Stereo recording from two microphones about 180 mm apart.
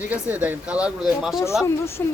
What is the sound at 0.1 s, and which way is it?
Speech, 10° right (ahead or behind).